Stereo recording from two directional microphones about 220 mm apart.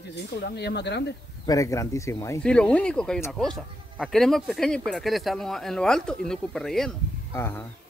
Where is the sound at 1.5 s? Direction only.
15° left (ahead or behind).